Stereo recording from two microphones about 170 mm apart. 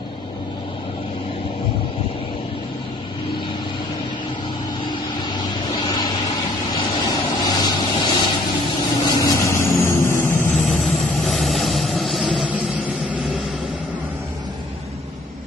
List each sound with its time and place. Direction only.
5.3 s vehicle: 25° left (ahead or behind); by 13.4 s 10° right (ahead or behind)